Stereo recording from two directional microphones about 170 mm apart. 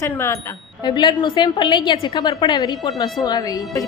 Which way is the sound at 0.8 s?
25° left (ahead or behind).